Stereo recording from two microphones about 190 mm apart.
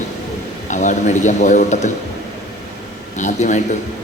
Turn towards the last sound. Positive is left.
turn(degrees=40)  # may be behind; listen again after turning